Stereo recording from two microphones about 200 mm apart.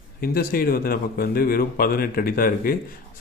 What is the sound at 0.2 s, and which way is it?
A man's voice, 45° left (ahead or behind).